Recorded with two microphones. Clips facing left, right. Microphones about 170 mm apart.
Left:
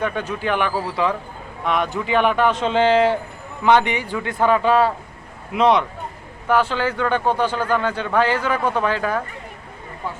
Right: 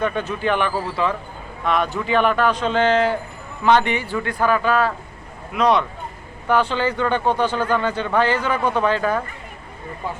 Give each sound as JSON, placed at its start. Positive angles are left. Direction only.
{"t": 0.0, "sound": "a man's voice", "side_deg": 10}
{"t": 3.6, "sound": "a man's voice", "side_deg": 15}
{"t": 6.5, "sound": "speech", "side_deg": 10}